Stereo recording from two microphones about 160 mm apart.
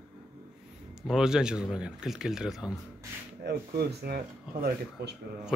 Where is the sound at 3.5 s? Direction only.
80° right.